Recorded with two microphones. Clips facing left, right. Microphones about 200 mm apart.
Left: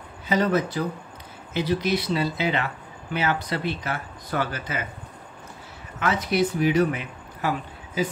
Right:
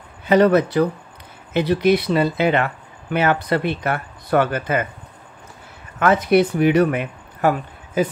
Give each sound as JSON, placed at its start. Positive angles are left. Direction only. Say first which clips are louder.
{"t": 0.3, "sound": "speech", "louder": "right 8 dB", "side_deg": -65}
{"t": 5.9, "sound": "speech", "louder": "right 8 dB", "side_deg": -55}